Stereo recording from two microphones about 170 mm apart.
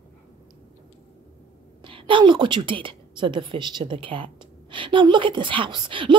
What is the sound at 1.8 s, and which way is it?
A woman's voice, 30° right (ahead or behind).